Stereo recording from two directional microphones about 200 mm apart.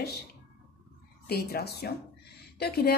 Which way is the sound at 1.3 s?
50° left (ahead or behind).